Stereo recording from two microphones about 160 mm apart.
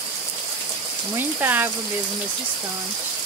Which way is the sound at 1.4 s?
10° right (ahead or behind).